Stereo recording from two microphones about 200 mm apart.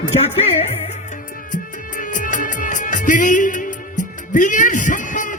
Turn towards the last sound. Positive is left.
turn(degrees=40)  # may be behind; listen again after turning